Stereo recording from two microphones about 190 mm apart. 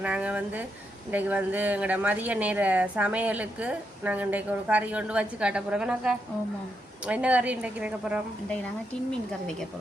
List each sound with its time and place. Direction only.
0.0 s a woman's voice: 5° right (ahead or behind)